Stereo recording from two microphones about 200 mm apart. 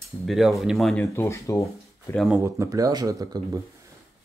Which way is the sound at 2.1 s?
Centre (ahead or behind).